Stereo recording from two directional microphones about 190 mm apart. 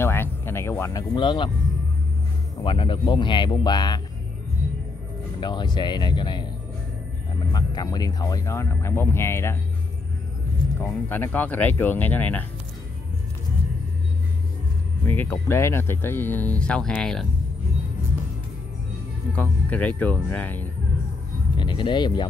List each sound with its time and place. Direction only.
0.0 s a sound: 10° left (ahead or behind)
2.6 s speech: 25° left (ahead or behind)
5.4 s speech: 25° left (ahead or behind)
10.8 s speech: 15° left (ahead or behind)
15.0 s speech: 10° left (ahead or behind)
19.3 s speech: 10° left (ahead or behind)
21.5 s speech: 25° left (ahead or behind)